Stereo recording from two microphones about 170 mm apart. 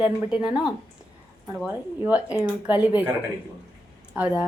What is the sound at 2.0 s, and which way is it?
A woman's voice, 10° right (ahead or behind).